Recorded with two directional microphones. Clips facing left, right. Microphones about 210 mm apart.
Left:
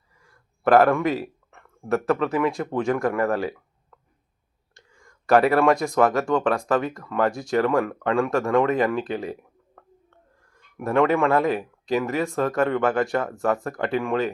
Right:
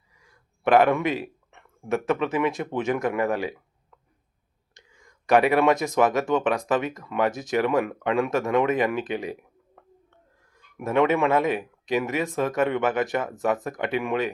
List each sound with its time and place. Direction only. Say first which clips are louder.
0.6 s speech: left 2 dB; 20° right (ahead or behind)
4.7 s whispering: left 2 dB; 20° right (ahead or behind)
6.0 s speech: left 1 dB; 20° right (ahead or behind)
10.8 s speech: left 1 dB; 20° right (ahead or behind)